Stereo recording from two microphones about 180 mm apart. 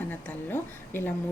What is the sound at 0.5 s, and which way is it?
Speech, 10° left (ahead or behind).